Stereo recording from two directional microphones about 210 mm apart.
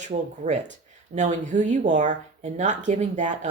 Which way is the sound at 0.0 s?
35° right (ahead or behind).